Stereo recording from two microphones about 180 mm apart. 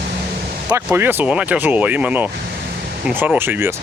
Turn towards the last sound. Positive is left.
turn(degrees=-10)  # may be behind; listen again after turning